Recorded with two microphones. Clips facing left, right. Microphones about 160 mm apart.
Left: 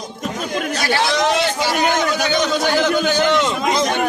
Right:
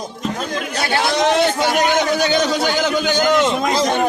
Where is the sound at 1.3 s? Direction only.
55° right (ahead or behind).